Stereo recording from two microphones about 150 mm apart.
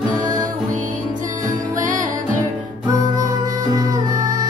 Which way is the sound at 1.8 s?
60° right (ahead or behind).